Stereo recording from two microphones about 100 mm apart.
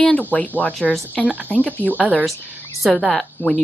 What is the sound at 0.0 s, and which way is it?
Speech, 15° left (ahead or behind).